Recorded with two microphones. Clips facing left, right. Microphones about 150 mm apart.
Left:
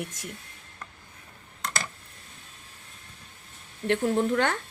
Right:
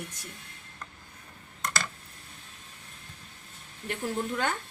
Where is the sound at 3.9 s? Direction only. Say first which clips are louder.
Left 8 dB; 70° left (ahead or behind).